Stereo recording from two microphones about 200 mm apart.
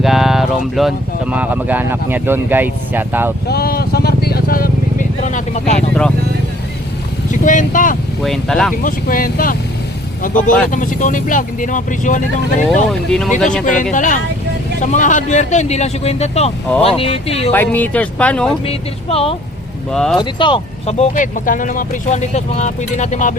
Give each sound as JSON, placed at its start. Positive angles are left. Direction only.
{"t": 0.0, "sound": "speech", "side_deg": 0}
{"t": 3.4, "sound": "vehicle", "side_deg": 50}
{"t": 5.3, "sound": "speech", "side_deg": 35}
{"t": 5.9, "sound": "speech", "side_deg": 5}
{"t": 7.4, "sound": "speech", "side_deg": 40}
{"t": 8.2, "sound": "speech", "side_deg": 0}
{"t": 8.8, "sound": "speech", "side_deg": 45}
{"t": 10.7, "sound": "speech", "side_deg": 40}
{"t": 12.6, "sound": "speech", "side_deg": 0}
{"t": 13.9, "sound": "speech", "side_deg": 40}
{"t": 17.5, "sound": "speech", "side_deg": 10}
{"t": 18.6, "sound": "speech", "side_deg": 30}
{"t": 19.9, "sound": "speech", "side_deg": 0}
{"t": 20.1, "sound": "speech", "side_deg": 25}